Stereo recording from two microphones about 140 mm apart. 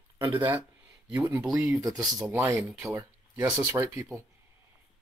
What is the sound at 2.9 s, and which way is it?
Speech, 20° right (ahead or behind).